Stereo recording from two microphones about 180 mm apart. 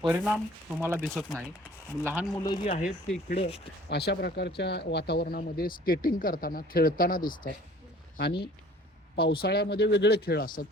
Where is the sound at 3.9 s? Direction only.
65° left (ahead or behind).